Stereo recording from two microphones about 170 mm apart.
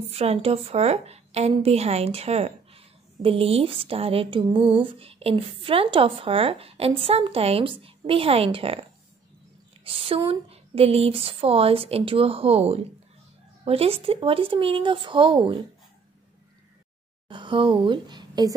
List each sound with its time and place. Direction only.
0.1 s a woman's voice: 35° right (ahead or behind)
9.8 s a woman's voice: 35° right (ahead or behind)
17.3 s speech: 30° right (ahead or behind)